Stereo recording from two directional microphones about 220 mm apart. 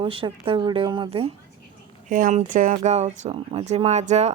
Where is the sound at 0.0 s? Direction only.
25° right (ahead or behind).